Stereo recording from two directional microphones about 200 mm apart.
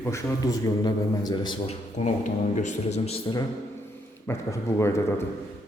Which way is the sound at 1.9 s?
35° left (ahead or behind).